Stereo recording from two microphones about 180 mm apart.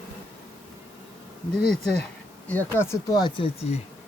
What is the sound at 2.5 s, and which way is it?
Speech, 10° left (ahead or behind).